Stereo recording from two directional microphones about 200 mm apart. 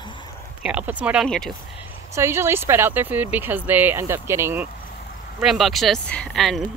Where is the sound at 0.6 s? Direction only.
5° right (ahead or behind).